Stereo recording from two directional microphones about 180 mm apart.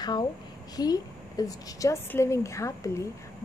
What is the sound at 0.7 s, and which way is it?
A woman's voice, 20° left (ahead or behind).